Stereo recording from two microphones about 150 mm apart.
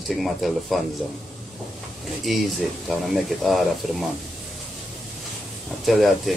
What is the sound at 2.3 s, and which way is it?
Speech, centre (ahead or behind).